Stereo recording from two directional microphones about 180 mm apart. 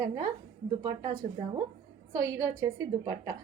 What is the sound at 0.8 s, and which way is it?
A woman's voice, 25° right (ahead or behind).